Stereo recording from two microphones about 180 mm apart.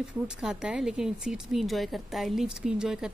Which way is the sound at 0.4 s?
5° right (ahead or behind).